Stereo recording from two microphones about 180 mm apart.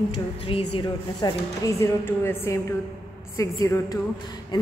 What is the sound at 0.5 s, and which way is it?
A woman's voice, 30° left (ahead or behind).